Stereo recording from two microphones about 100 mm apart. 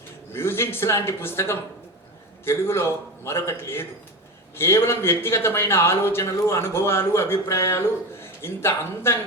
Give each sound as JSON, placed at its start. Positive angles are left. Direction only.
{"t": 0.3, "sound": "a man's voice", "side_deg": 25}